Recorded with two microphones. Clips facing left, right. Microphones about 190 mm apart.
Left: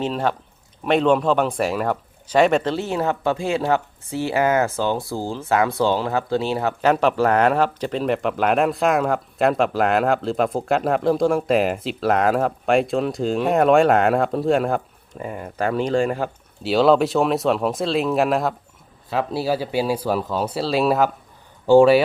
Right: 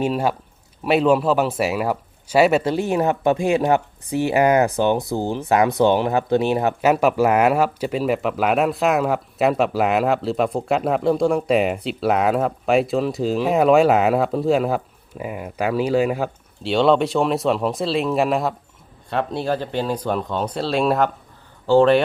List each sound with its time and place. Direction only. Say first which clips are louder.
0.0 s speech: right 2 dB; 10° right (ahead or behind)
6.8 s speech: even; 5° right (ahead or behind); by 22.0 s 10° left (ahead or behind)